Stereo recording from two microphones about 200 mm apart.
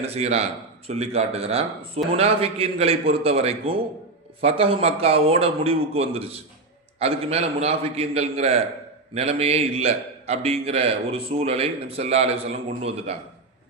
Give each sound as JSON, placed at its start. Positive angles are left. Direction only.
{"t": 0.0, "sound": "a man's voice", "side_deg": -30}